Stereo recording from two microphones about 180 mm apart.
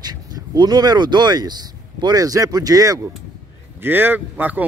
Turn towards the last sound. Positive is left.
turn(degrees=-10)  # may be behind; listen again after turning